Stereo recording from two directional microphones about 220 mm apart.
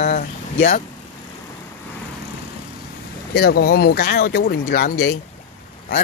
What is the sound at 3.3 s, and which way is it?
Speech, 45° left (ahead or behind).